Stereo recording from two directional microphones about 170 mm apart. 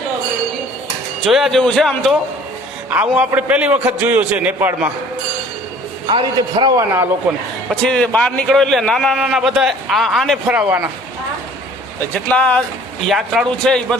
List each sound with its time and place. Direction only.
1.3 s a man's voice: centre (ahead or behind)
3.2 s a man's voice: 5° right (ahead or behind)
6.1 s a man's voice: 30° right (ahead or behind)
6.7 s a man's voice: 15° right (ahead or behind)
7.7 s a man's voice: 5° left (ahead or behind)
12.1 s a man's voice: 10° left (ahead or behind)